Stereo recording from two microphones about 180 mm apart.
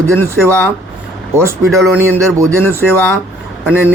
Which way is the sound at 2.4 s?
15° right (ahead or behind).